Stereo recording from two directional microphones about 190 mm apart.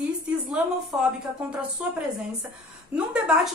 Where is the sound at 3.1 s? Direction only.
5° right (ahead or behind).